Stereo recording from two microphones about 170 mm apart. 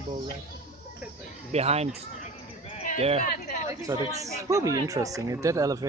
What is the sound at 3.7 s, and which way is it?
Speech, 20° right (ahead or behind).